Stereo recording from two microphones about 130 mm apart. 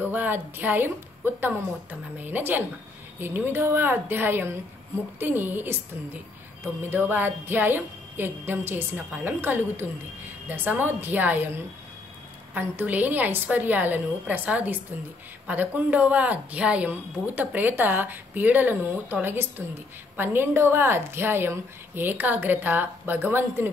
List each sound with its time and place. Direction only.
0.0 s speech: 15° right (ahead or behind)